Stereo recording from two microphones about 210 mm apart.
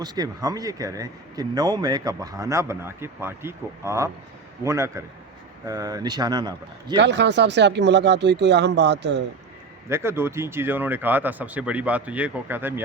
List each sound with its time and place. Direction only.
0.0 s speech: 20° right (ahead or behind)
6.9 s speech: 55° right (ahead or behind)
9.9 s speech: 10° right (ahead or behind)